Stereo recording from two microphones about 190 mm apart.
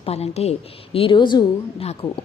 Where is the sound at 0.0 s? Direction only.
35° left (ahead or behind).